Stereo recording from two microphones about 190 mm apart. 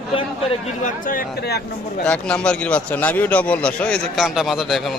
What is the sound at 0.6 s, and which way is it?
Speech, 40° left (ahead or behind).